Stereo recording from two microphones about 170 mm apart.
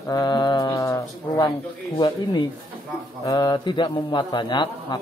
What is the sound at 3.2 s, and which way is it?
Speech, 25° left (ahead or behind).